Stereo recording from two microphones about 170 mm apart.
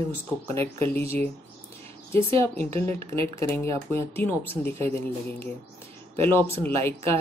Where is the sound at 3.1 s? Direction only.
15° left (ahead or behind).